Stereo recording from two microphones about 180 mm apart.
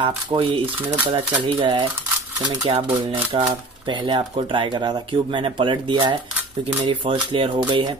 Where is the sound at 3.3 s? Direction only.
25° right (ahead or behind).